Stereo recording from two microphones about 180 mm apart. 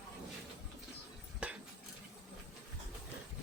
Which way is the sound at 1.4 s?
5° right (ahead or behind).